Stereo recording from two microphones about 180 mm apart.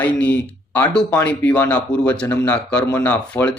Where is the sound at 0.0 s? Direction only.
5° left (ahead or behind).